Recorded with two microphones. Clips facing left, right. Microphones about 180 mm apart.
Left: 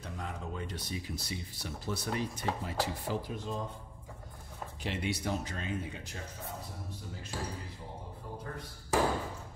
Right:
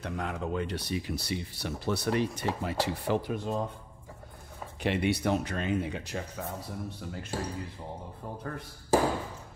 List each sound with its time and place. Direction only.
0.0 s speech: 75° right (ahead or behind)
4.8 s speech: 65° right (ahead or behind)
6.4 s speech: 65° right (ahead or behind)
8.5 s speech: 55° right (ahead or behind)